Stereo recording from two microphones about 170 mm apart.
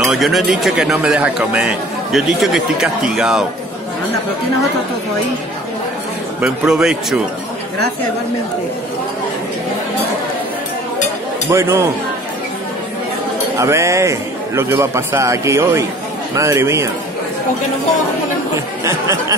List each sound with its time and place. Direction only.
0.0 s speech: centre (ahead or behind)
6.4 s speech: 5° right (ahead or behind)
11.5 s a man's voice: 15° right (ahead or behind)
13.6 s a man's voice: 15° right (ahead or behind)
18.9 s a man's voice: 20° right (ahead or behind)